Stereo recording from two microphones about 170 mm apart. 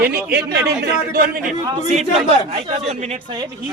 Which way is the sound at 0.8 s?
60° right (ahead or behind).